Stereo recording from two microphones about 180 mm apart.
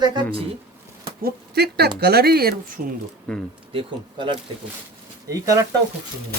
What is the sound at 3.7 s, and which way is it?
Speech, 30° right (ahead or behind).